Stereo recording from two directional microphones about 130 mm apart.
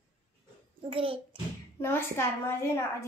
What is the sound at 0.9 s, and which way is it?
Speech, 45° right (ahead or behind).